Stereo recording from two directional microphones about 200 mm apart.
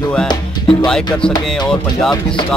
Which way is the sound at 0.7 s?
5° left (ahead or behind).